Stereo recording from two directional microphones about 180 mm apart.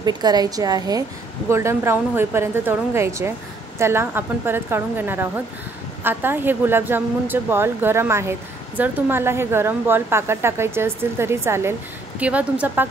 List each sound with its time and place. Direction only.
0.0 s a woman's voice: 20° right (ahead or behind)